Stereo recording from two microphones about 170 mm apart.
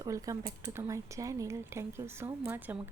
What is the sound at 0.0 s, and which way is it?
Speech, 20° right (ahead or behind).